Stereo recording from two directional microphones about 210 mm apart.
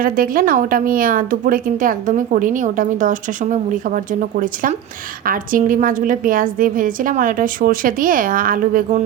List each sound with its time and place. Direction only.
0.0 s a woman's voice: 40° right (ahead or behind)